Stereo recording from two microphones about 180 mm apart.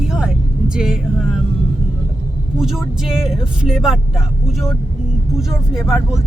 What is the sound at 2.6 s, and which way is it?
Speech, centre (ahead or behind).